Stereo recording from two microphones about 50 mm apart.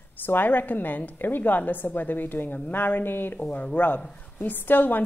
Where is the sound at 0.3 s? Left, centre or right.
Left.